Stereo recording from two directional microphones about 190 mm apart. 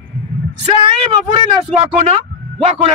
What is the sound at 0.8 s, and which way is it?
A man's voice, 25° right (ahead or behind).